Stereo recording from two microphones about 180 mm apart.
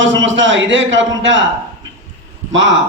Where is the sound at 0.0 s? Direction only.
90° right.